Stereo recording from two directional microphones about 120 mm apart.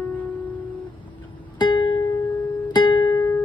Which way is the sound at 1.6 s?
40° left (ahead or behind).